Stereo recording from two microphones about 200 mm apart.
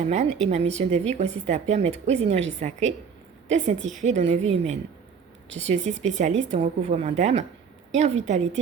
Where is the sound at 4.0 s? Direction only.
35° right (ahead or behind).